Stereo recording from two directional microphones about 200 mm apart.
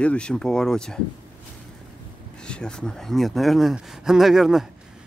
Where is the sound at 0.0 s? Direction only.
5° left (ahead or behind).